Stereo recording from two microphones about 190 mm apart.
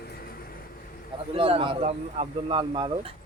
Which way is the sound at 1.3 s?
30° right (ahead or behind).